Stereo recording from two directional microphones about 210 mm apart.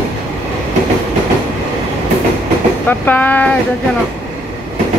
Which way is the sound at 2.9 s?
10° left (ahead or behind).